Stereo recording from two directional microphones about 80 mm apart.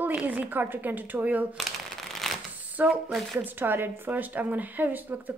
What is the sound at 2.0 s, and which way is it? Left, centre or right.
Shuffling cards, centre.